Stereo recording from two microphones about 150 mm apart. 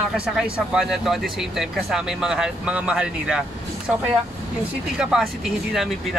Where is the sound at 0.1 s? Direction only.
5° right (ahead or behind).